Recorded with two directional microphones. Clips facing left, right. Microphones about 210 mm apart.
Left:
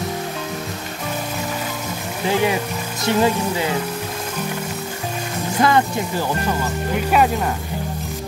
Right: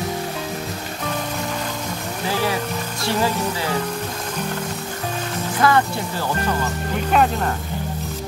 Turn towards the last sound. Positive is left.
turn(degrees=5)  # may be behind; listen again after turning